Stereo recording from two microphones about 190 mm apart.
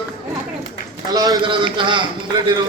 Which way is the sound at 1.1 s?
20° right (ahead or behind).